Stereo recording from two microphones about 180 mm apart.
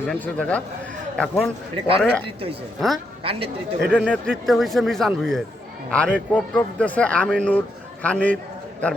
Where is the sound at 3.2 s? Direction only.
30° right (ahead or behind).